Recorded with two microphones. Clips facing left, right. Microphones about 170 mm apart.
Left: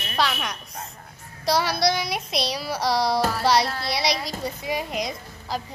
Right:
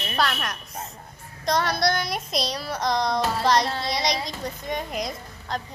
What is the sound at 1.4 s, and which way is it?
A woman's voice, 5° left (ahead or behind).